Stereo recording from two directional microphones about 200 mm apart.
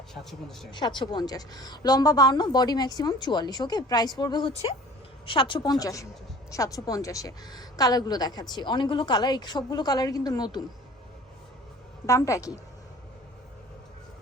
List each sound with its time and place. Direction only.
0.1 s a woman's voice: centre (ahead or behind)
0.7 s a woman's voice: 20° left (ahead or behind)
12.0 s a woman's voice: 15° left (ahead or behind)